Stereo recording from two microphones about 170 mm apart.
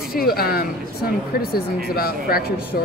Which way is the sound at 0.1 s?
60° left (ahead or behind).